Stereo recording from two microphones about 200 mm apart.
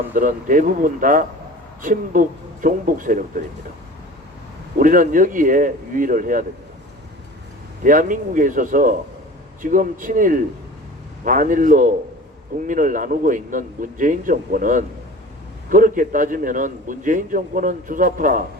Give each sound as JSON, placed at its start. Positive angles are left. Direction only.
{"t": 0.1, "sound": "a man's voice", "side_deg": -40}
{"t": 4.8, "sound": "speech", "side_deg": -45}
{"t": 7.9, "sound": "a man's voice", "side_deg": -40}